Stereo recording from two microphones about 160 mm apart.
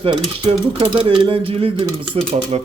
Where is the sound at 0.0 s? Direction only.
30° right (ahead or behind).